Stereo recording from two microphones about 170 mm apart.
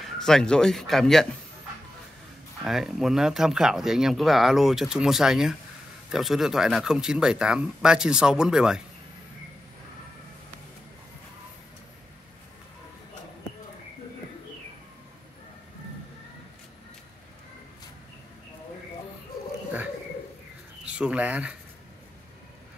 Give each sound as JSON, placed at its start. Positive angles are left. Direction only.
{"t": 0.2, "sound": "speech", "side_deg": 5}
{"t": 2.6, "sound": "speech", "side_deg": 0}
{"t": 21.0, "sound": "speech", "side_deg": -5}